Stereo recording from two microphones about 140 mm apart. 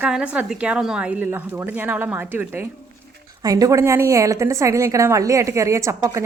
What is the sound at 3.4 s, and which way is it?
A woman's voice, 25° right (ahead or behind).